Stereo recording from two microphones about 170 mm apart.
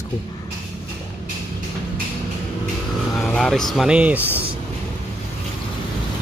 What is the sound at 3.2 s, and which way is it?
Speech, 5° left (ahead or behind).